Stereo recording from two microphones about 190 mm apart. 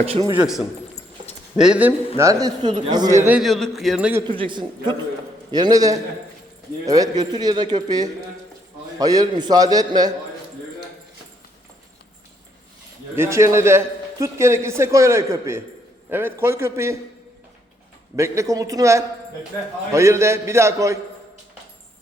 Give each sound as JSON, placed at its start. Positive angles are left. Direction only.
{"t": 0.3, "sound": "a man's voice", "side_deg": 0}
{"t": 2.1, "sound": "a man's voice", "side_deg": -15}
{"t": 4.3, "sound": "speech", "side_deg": -25}
{"t": 13.1, "sound": "a man's voice", "side_deg": -15}
{"t": 18.2, "sound": "a man's voice", "side_deg": -15}